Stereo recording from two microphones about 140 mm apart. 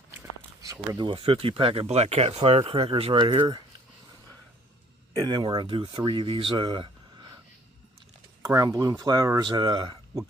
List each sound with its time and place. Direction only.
0.2 s a sound: 25° right (ahead or behind)
0.9 s speech: 35° right (ahead or behind)
5.1 s speech: 30° right (ahead or behind)
8.4 s speech: 25° right (ahead or behind)